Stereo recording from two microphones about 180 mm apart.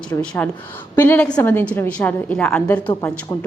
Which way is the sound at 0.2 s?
5° left (ahead or behind).